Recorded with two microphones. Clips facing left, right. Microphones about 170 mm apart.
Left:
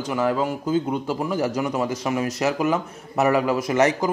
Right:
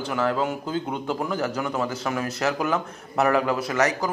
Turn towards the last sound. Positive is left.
turn(degrees=20)  # may be behind; listen again after turning